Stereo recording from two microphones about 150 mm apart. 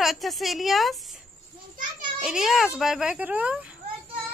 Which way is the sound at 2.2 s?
5° right (ahead or behind).